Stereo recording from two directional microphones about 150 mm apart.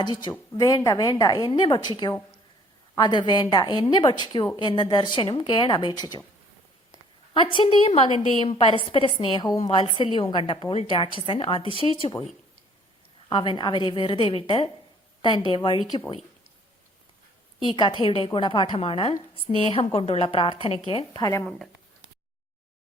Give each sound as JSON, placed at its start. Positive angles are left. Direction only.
{"t": 0.0, "sound": "a woman's voice", "side_deg": 30}
{"t": 7.5, "sound": "a woman's voice", "side_deg": 35}
{"t": 9.6, "sound": "a woman's voice", "side_deg": 40}
{"t": 13.3, "sound": "a woman's voice", "side_deg": 30}
{"t": 17.6, "sound": "a woman's voice", "side_deg": 35}